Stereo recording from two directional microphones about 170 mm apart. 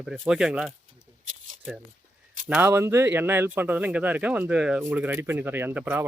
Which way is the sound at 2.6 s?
15° right (ahead or behind).